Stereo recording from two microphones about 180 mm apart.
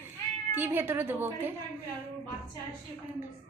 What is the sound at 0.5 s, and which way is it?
A woman's voice, 10° right (ahead or behind).